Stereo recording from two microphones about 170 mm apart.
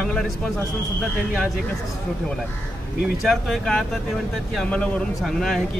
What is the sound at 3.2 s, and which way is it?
Speech, centre (ahead or behind).